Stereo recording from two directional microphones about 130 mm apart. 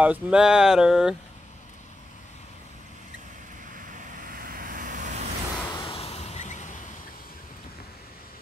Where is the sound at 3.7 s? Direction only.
85° right; by 5.3 s 65° right (ahead or behind).